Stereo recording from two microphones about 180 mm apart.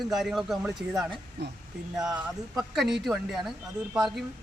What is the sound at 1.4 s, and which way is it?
Speech, 65° right (ahead or behind).